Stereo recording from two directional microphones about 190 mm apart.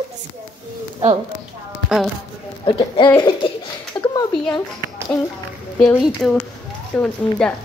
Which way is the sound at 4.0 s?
20° left (ahead or behind).